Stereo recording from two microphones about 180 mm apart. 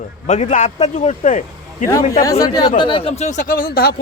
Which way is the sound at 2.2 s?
20° left (ahead or behind).